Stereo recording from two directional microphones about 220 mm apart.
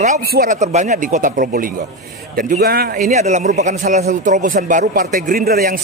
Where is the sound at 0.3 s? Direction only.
40° right (ahead or behind).